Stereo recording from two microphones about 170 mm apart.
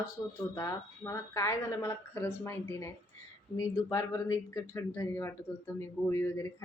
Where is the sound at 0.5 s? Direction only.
20° left (ahead or behind).